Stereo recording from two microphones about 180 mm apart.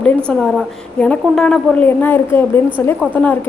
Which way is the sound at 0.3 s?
5° left (ahead or behind).